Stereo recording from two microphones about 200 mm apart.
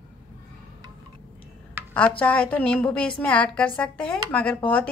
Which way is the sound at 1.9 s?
5° left (ahead or behind).